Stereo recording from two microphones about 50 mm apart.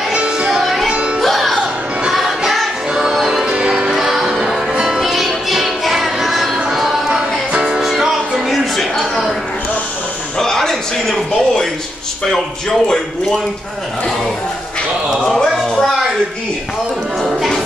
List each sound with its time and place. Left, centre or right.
0.1 s music: centre
0.5 s music: centre
0.9 s music: right
1.2 s music: centre
7.2 s music: centre
7.8 s music: centre
8.7 s a sound: centre
10.4 s a sound: centre
12.3 s speech: centre
15.1 s speech: centre
17.2 s music: centre